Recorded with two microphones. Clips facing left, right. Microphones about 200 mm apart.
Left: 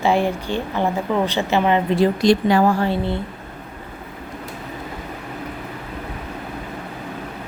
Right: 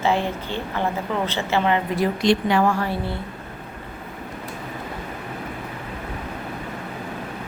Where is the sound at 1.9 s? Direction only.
35° left (ahead or behind).